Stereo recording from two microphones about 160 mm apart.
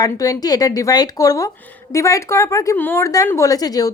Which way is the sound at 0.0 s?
20° left (ahead or behind).